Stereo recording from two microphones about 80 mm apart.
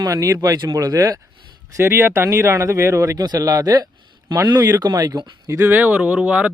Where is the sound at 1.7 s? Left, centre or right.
Right.